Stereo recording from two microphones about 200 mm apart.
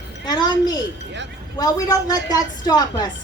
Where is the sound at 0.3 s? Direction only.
20° left (ahead or behind).